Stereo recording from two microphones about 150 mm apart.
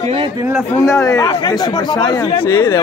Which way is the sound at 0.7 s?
20° left (ahead or behind).